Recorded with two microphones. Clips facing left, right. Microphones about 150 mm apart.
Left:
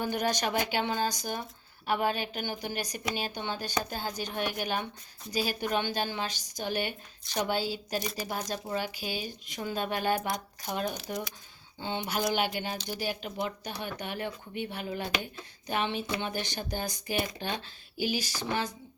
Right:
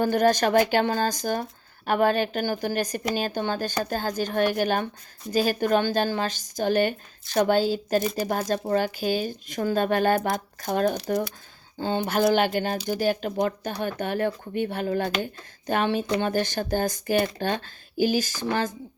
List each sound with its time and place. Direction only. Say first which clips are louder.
0.0 s speech: right 9 dB; 45° right (ahead or behind)